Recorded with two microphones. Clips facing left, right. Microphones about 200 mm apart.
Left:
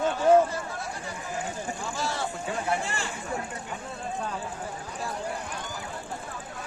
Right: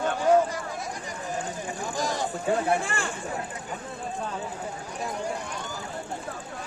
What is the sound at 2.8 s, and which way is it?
Speech, 50° right (ahead or behind).